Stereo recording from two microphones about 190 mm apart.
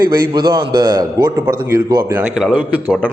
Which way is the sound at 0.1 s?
25° right (ahead or behind).